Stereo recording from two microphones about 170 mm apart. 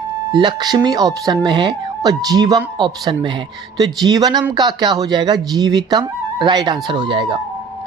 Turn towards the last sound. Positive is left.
turn(degrees=-30)  # may be behind; listen again after turning